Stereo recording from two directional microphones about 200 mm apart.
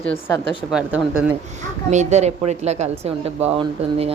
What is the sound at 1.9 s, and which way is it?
Speech, 35° right (ahead or behind).